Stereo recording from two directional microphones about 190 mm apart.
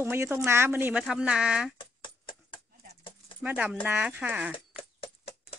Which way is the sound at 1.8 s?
25° left (ahead or behind).